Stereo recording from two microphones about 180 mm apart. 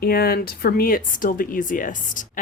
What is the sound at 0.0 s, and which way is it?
Speech, 60° left (ahead or behind).